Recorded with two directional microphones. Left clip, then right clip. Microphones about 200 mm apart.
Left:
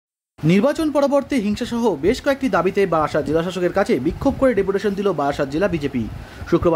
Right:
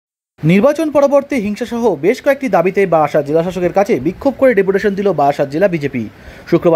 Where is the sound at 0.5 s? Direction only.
15° right (ahead or behind).